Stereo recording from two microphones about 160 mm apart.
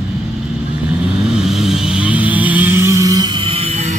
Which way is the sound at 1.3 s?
Centre (ahead or behind).